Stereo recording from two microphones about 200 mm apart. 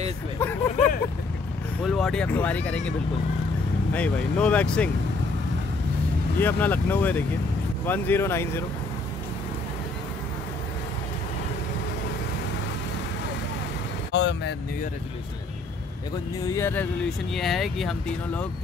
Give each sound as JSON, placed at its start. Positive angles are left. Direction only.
{"t": 0.4, "sound": "speech", "side_deg": 10}
{"t": 3.9, "sound": "speech", "side_deg": 5}
{"t": 6.4, "sound": "speech", "side_deg": 10}
{"t": 14.1, "sound": "speech", "side_deg": 60}
{"t": 16.5, "sound": "speech", "side_deg": 10}
{"t": 17.3, "sound": "speech", "side_deg": 0}